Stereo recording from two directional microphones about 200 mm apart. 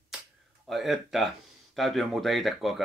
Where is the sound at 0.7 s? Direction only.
Centre (ahead or behind).